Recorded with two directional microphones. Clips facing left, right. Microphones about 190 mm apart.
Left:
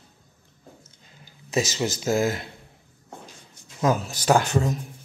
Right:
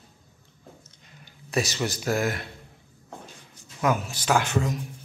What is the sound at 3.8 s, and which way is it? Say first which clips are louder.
Speech: left 3 dB; 40° left (ahead or behind).